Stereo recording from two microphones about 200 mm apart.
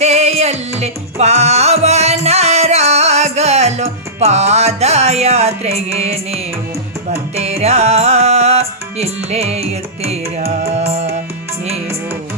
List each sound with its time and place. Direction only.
0.0 s music: 35° right (ahead or behind)